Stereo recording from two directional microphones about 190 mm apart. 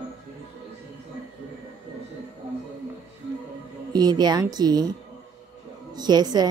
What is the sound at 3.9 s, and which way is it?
A woman's voice, 20° right (ahead or behind).